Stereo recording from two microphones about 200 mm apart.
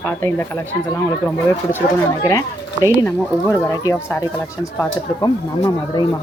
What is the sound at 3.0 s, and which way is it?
Speech, 15° left (ahead or behind).